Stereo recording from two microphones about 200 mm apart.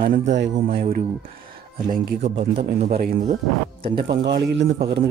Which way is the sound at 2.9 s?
45° right (ahead or behind).